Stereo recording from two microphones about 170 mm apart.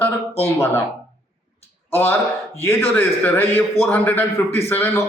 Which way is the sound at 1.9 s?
10° left (ahead or behind).